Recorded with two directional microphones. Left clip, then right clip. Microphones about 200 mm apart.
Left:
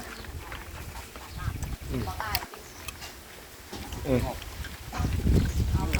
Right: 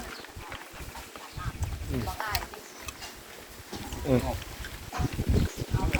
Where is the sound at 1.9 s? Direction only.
20° left (ahead or behind).